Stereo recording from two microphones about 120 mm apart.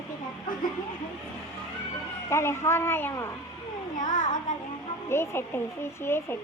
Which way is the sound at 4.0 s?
90° left.